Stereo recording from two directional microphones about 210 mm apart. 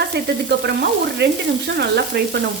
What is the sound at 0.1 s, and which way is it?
A woman's voice, 50° right (ahead or behind).